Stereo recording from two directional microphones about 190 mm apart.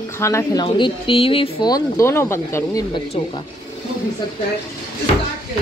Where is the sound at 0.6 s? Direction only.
25° left (ahead or behind).